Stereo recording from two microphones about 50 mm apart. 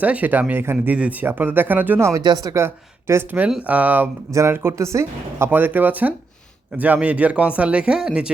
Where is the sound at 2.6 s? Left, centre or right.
Right.